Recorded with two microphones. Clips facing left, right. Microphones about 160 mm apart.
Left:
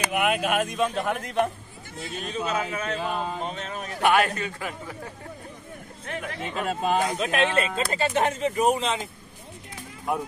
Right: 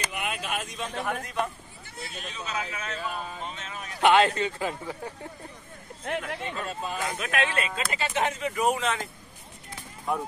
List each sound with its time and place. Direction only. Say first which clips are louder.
0.0 s speech: left 9 dB; 60° left (ahead or behind)
2.1 s speech: left 7 dB; 50° left (ahead or behind); by 3.4 s 65° left (ahead or behind)
3.4 s speech: left 6 dB; 40° left (ahead or behind)
4.0 s speech: right 2 dB; 20° right (ahead or behind)
6.0 s speech: right 2 dB; 65° right (ahead or behind)
6.5 s speech: left 8 dB; 75° left (ahead or behind)
7.0 s speech: left 5 dB; 25° left (ahead or behind)